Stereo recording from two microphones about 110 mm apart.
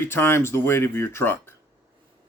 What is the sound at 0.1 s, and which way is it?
Speech, 20° left (ahead or behind).